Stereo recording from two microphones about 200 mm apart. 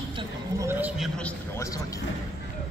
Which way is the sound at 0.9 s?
Centre (ahead or behind).